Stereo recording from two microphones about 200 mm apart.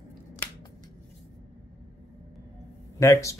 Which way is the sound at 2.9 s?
15° left (ahead or behind).